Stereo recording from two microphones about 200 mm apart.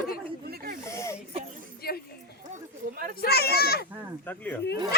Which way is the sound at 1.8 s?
50° left (ahead or behind).